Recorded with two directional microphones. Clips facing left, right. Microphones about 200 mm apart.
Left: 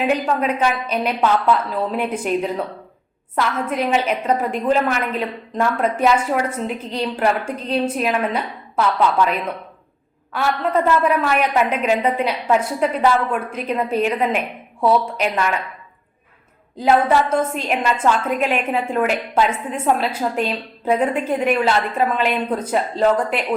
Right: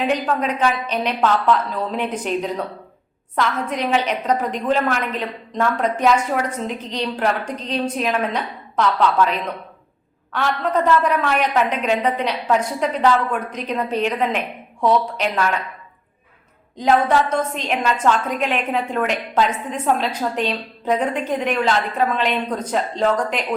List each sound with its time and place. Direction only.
0.0 s a woman's voice: 5° left (ahead or behind)
16.7 s a woman's voice: 5° left (ahead or behind)